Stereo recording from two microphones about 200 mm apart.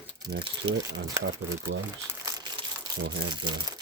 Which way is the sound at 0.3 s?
60° right (ahead or behind).